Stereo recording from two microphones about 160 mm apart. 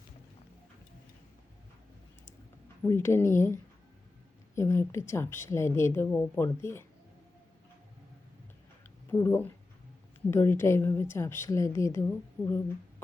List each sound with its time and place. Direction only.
2.8 s a woman's voice: 15° left (ahead or behind)
9.1 s a woman's voice: 15° left (ahead or behind)